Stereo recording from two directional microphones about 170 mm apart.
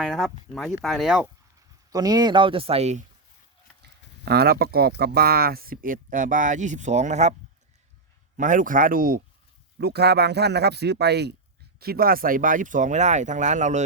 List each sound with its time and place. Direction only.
0.0 s speech: centre (ahead or behind)
1.9 s speech: 25° right (ahead or behind); by 3.0 s 40° right (ahead or behind)
3.8 s speech: 70° right (ahead or behind); by 7.3 s 45° right (ahead or behind)
8.4 s speech: 50° right (ahead or behind)
9.8 s speech: 70° right (ahead or behind)
11.8 s speech: 60° right (ahead or behind); by 13.8 s 45° right (ahead or behind)